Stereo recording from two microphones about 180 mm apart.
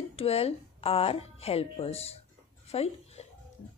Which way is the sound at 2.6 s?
35° left (ahead or behind).